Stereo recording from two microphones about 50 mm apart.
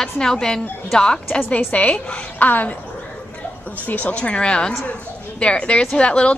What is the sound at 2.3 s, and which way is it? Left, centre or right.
Speech, left.